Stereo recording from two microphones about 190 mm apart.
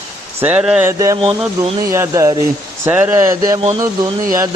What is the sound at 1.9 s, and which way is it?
A man's voice, 15° right (ahead or behind).